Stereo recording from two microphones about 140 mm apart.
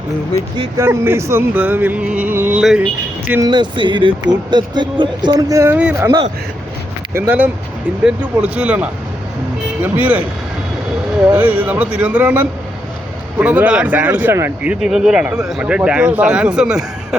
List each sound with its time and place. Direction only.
0.8 s speech: 15° right (ahead or behind)
3.4 s speech: 30° right (ahead or behind); by 6.1 s 15° right (ahead or behind)
7.1 s speech: 15° right (ahead or behind)
11.3 s speech: 10° right (ahead or behind)